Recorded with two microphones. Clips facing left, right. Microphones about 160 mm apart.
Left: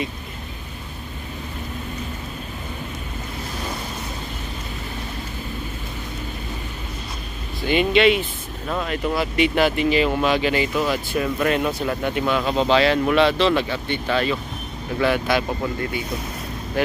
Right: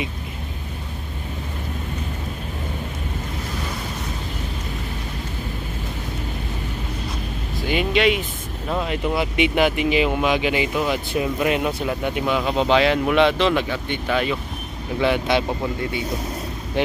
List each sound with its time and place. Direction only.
7.6 s speech: 5° right (ahead or behind); by 15.4 s 20° right (ahead or behind)